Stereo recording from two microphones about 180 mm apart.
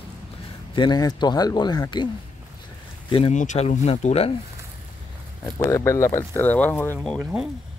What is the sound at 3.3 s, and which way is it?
Speech, 40° left (ahead or behind).